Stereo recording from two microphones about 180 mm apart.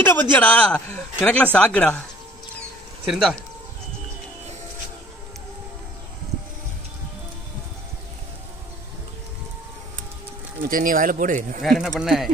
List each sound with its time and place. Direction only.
0.0 s speech: 10° left (ahead or behind)
3.1 s speech: centre (ahead or behind)
10.7 s speech: 50° right (ahead or behind)
11.6 s speech: centre (ahead or behind)